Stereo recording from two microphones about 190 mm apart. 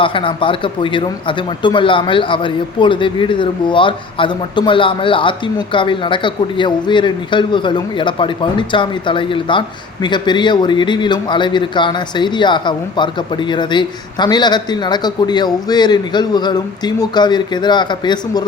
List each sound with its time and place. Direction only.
0.0 s speech: 25° left (ahead or behind)